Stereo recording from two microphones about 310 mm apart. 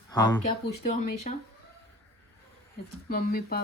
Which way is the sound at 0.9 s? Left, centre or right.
Left.